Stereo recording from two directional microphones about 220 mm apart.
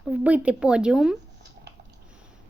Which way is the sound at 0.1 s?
5° right (ahead or behind).